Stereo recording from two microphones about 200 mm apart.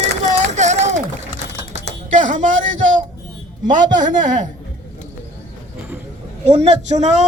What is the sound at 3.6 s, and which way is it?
Speech, 40° right (ahead or behind).